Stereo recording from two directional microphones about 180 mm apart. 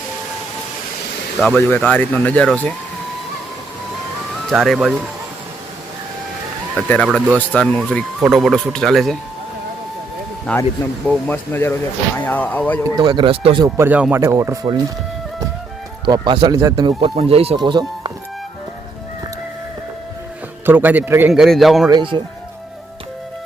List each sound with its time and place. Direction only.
1.4 s speech: 10° left (ahead or behind)
4.4 s speech: centre (ahead or behind)
6.7 s speech: 5° left (ahead or behind)
10.5 s speech: 5° left (ahead or behind)
13.0 s speech: 25° right (ahead or behind)
13.7 s a man's voice: 10° right (ahead or behind)
16.0 s speech: 25° right (ahead or behind)
20.7 s a man's voice: 10° right (ahead or behind)
21.8 s speech: 25° right (ahead or behind)